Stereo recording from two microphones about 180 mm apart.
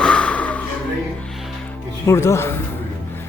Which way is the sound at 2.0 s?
15° left (ahead or behind).